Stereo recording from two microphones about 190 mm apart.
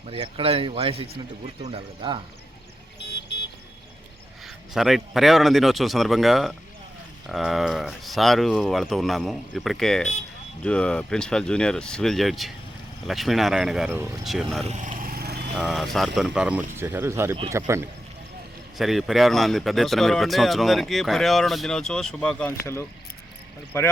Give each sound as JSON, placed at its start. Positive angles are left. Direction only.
{"t": 0.1, "sound": "speech", "side_deg": -30}
{"t": 4.4, "sound": "speech", "side_deg": 0}
{"t": 14.6, "sound": "vehicle", "side_deg": -40}
{"t": 15.5, "sound": "speech", "side_deg": 0}
{"t": 18.8, "sound": "speech", "side_deg": 0}